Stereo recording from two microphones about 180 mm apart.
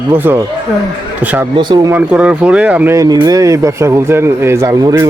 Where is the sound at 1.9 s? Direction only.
10° right (ahead or behind).